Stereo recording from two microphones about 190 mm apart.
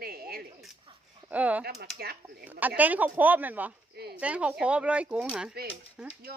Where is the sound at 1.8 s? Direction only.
55° right (ahead or behind).